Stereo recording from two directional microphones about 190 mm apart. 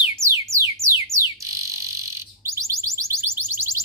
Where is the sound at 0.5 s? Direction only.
15° right (ahead or behind).